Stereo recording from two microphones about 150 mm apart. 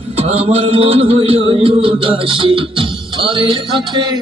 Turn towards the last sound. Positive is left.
turn(degrees=-30)  # may be behind; listen again after turning